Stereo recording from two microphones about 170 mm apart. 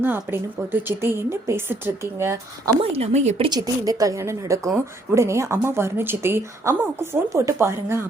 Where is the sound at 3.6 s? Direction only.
20° right (ahead or behind).